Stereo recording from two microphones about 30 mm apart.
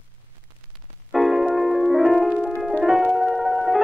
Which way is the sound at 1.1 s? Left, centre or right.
Centre.